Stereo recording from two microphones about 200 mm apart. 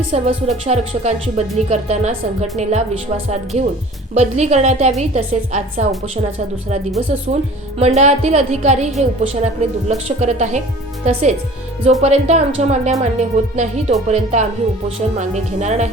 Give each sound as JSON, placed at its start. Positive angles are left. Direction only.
{"t": 0.1, "sound": "music", "side_deg": -30}
{"t": 7.1, "sound": "music", "side_deg": -35}